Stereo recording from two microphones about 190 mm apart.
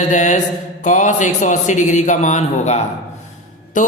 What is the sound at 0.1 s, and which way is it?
Music, 40° left (ahead or behind).